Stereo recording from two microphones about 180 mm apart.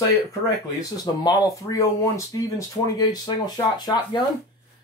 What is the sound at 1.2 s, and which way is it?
Speech, 20° left (ahead or behind).